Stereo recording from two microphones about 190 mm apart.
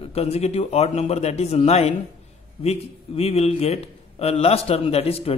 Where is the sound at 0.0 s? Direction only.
30° left (ahead or behind).